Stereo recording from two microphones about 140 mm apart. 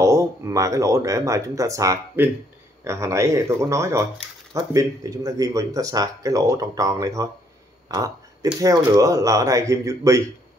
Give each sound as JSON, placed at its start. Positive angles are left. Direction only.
{"t": 0.0, "sound": "speech", "side_deg": -20}
{"t": 7.9, "sound": "burping", "side_deg": -25}
{"t": 8.5, "sound": "speech", "side_deg": -25}